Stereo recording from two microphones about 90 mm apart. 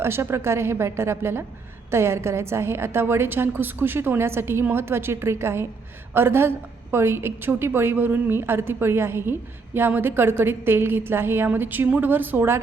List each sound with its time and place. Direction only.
0.0 s a woman's voice: 25° right (ahead or behind)